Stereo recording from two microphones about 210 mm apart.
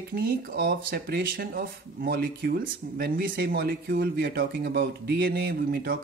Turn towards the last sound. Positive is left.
turn(degrees=-45)  # may be behind; listen again after turning